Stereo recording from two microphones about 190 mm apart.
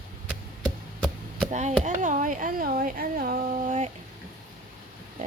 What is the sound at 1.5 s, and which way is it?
Speech, 40° right (ahead or behind).